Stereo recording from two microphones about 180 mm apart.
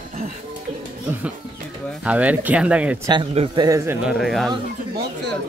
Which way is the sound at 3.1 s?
30° right (ahead or behind).